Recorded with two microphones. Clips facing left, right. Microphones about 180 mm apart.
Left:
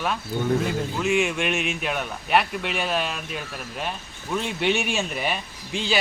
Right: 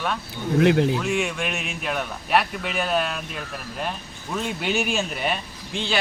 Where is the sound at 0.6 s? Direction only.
75° right (ahead or behind).